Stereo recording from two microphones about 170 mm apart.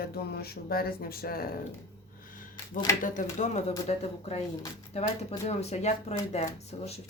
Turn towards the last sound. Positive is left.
turn(degrees=40)  # may be behind; listen again after turning